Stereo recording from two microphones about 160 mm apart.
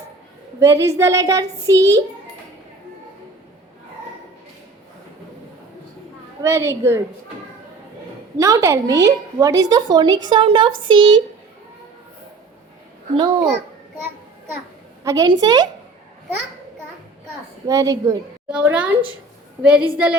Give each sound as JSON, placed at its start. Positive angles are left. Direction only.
{"t": 0.6, "sound": "a woman's voice", "side_deg": -15}
{"t": 6.4, "sound": "a woman's voice", "side_deg": -15}
{"t": 8.4, "sound": "a woman's voice", "side_deg": -20}
{"t": 13.1, "sound": "a woman's voice", "side_deg": -25}
{"t": 15.0, "sound": "a woman's voice", "side_deg": -20}
{"t": 17.7, "sound": "a woman's voice", "side_deg": -20}
{"t": 18.4, "sound": "a woman's voice", "side_deg": -5}